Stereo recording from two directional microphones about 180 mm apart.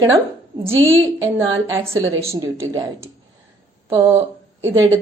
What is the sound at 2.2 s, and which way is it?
Speech, 15° right (ahead or behind).